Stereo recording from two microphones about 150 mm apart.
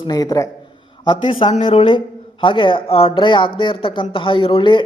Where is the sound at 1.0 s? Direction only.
40° left (ahead or behind).